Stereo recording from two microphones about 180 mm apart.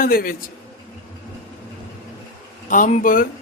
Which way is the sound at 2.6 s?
45° left (ahead or behind).